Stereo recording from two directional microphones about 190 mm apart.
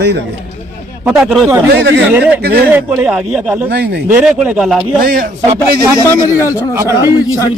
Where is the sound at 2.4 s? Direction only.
55° right (ahead or behind).